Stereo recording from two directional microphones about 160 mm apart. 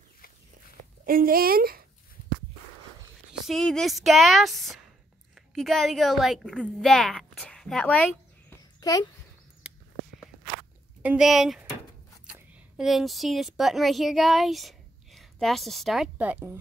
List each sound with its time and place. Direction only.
1.0 s speech: 65° right (ahead or behind)
3.4 s a woman's voice: centre (ahead or behind)
8.8 s a child's voice: 25° left (ahead or behind)
9.6 s a sound: 5° right (ahead or behind)
11.0 s a woman's voice: 5° right (ahead or behind)